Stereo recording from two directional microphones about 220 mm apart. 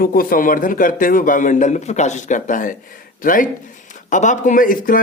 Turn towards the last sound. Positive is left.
turn(degrees=40)  # may be behind; listen again after turning